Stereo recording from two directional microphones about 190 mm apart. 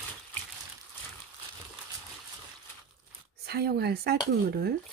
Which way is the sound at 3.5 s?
55° right (ahead or behind).